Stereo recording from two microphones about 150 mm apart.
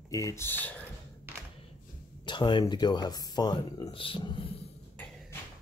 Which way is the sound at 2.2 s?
30° left (ahead or behind).